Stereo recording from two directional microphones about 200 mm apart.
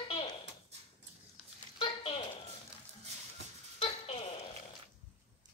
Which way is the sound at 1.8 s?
25° left (ahead or behind).